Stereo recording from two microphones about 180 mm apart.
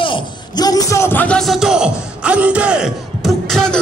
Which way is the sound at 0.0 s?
25° left (ahead or behind).